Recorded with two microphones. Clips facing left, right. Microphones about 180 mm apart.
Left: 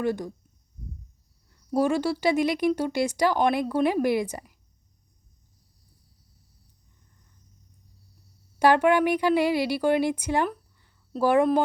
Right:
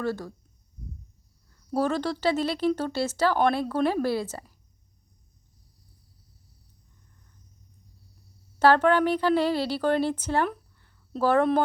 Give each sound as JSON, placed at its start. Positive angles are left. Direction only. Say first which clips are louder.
{"t": 0.0, "sound": "a woman's voice", "louder": "left 3 dB", "side_deg": 15}
{"t": 1.5, "sound": "a woman's voice", "louder": "left 2 dB", "side_deg": 15}
{"t": 8.5, "sound": "a woman's voice", "louder": "even", "side_deg": 15}